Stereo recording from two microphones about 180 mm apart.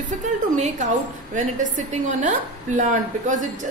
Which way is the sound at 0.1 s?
40° right (ahead or behind).